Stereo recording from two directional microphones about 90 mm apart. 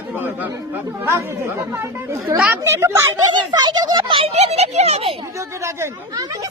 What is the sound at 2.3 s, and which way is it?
Speech, 20° right (ahead or behind).